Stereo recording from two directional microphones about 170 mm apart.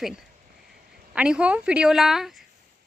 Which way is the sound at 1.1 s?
5° right (ahead or behind).